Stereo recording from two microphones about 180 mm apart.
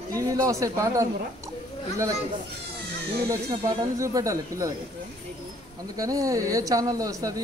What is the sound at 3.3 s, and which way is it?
Speech, 20° right (ahead or behind).